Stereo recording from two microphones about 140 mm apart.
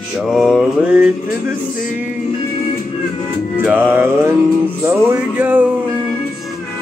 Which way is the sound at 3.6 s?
15° right (ahead or behind).